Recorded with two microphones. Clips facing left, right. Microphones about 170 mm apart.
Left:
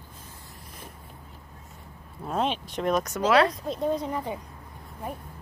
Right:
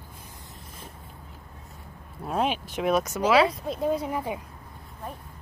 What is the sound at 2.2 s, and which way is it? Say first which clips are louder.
Speech: right 1 dB; 5° right (ahead or behind).